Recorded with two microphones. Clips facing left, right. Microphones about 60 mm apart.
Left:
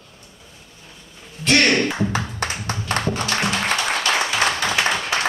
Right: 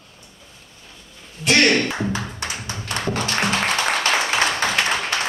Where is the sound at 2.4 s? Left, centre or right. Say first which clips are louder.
Left 4 dB; left.